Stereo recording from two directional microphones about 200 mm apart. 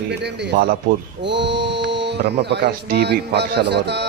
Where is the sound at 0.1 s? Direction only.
55° right (ahead or behind).